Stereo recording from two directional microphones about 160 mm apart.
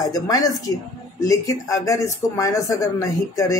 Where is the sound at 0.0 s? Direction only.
25° left (ahead or behind).